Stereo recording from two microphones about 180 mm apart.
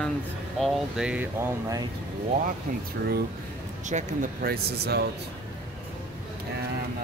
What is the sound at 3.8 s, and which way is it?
Speech, 40° right (ahead or behind).